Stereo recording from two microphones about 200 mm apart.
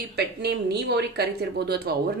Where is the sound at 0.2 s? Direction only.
55° right (ahead or behind).